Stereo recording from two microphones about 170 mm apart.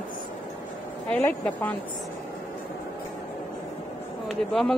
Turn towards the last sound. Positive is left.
turn(degrees=0)  # may be behind; listen again after turning